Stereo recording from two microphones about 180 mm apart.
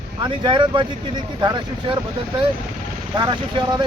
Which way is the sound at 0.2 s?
25° right (ahead or behind).